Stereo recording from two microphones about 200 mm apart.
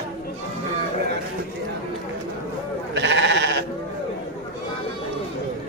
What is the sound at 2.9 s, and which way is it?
Sheep, 60° right (ahead or behind).